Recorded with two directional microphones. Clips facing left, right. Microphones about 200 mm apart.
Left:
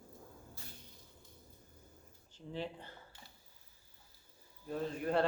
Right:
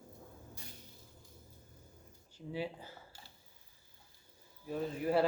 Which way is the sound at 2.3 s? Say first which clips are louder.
Right 2 dB; 10° right (ahead or behind).